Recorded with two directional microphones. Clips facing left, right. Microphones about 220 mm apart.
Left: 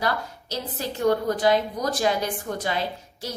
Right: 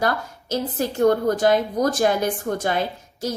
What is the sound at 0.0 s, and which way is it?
A woman's voice, 50° right (ahead or behind).